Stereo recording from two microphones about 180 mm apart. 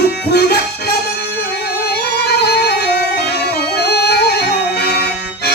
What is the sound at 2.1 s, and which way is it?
Music, 65° left (ahead or behind).